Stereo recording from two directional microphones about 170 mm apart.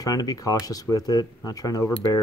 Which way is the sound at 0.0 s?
20° left (ahead or behind).